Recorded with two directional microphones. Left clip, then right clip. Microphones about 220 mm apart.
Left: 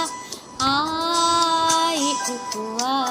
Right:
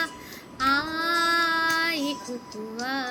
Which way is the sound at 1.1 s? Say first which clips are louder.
Left 4 dB; 20° left (ahead or behind).